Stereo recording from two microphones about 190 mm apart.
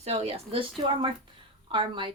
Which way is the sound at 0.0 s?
35° right (ahead or behind).